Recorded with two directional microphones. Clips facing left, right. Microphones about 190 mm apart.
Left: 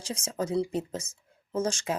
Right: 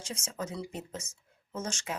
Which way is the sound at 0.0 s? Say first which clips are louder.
Left 6 dB; 35° left (ahead or behind).